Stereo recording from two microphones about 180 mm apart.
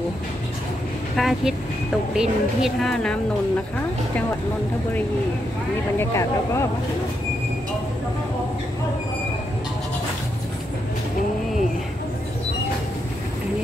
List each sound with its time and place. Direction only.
1.1 s speech: centre (ahead or behind)
5.9 s speech: 15° left (ahead or behind)